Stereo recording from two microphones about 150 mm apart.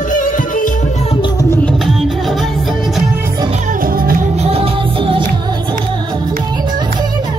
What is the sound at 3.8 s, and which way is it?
Music, 75° right (ahead or behind).